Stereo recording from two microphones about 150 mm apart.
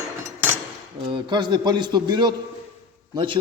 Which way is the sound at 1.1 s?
30° right (ahead or behind).